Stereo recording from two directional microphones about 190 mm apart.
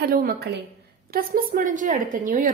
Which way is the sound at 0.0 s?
50° right (ahead or behind).